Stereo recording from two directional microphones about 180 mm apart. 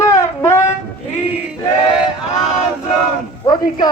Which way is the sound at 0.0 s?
15° left (ahead or behind).